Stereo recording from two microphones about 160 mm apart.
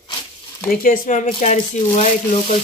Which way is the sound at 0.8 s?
55° left (ahead or behind).